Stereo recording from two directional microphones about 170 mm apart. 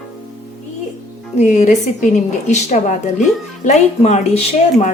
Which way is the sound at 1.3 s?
45° left (ahead or behind).